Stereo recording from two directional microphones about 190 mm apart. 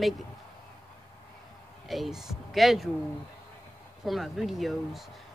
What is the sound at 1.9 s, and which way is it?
Speech, centre (ahead or behind).